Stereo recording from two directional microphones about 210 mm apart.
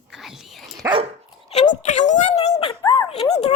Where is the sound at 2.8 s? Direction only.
20° left (ahead or behind).